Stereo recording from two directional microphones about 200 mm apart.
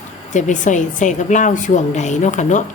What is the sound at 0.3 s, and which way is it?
Speech, 40° left (ahead or behind).